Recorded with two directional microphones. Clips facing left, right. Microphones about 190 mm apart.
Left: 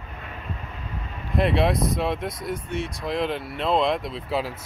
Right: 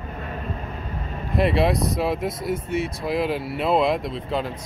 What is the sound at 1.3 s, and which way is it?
Speech, centre (ahead or behind).